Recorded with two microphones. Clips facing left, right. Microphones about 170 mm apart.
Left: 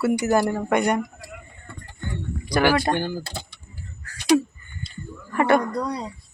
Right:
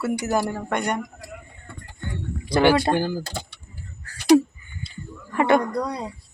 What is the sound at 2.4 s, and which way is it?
Speech, 25° right (ahead or behind).